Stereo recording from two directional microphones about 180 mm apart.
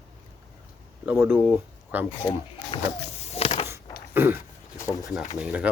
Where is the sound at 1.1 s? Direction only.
10° right (ahead or behind).